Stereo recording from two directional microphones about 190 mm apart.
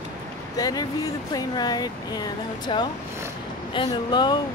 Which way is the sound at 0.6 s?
20° left (ahead or behind).